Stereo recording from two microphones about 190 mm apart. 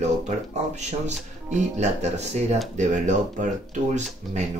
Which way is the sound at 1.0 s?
35° right (ahead or behind).